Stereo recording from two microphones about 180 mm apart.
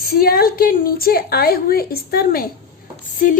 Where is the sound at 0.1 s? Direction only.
55° left (ahead or behind).